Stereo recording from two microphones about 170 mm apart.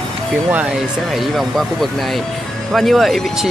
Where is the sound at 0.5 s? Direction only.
10° right (ahead or behind).